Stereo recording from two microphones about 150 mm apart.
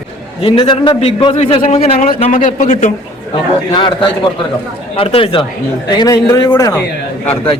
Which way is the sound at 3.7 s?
30° left (ahead or behind).